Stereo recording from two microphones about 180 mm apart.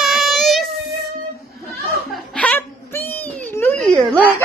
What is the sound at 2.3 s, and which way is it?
Laughter, 10° left (ahead or behind).